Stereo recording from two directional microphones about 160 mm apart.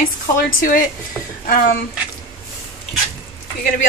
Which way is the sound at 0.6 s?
60° left (ahead or behind).